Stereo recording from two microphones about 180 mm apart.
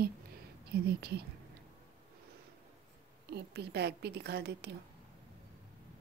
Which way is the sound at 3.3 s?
65° right (ahead or behind).